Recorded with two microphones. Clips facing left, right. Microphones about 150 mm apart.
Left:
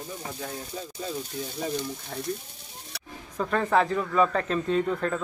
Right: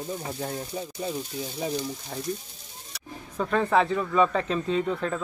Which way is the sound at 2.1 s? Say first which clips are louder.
Left 1 dB; 10° right (ahead or behind).